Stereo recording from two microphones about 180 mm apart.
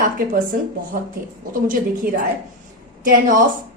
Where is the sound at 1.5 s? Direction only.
50° right (ahead or behind).